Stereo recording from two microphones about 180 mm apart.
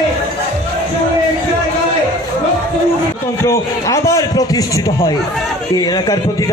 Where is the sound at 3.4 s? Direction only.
15° left (ahead or behind).